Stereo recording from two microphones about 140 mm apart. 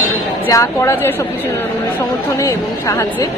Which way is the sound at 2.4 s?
20° left (ahead or behind).